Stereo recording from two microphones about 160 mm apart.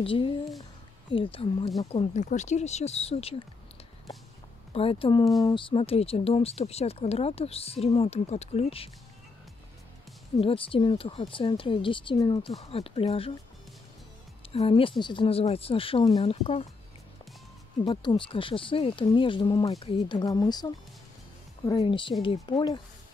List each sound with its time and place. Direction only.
0.0 s speech: 35° left (ahead or behind)
4.7 s speech: 35° left (ahead or behind)
10.4 s speech: 35° left (ahead or behind)
14.5 s speech: 35° left (ahead or behind)
17.8 s speech: 30° left (ahead or behind)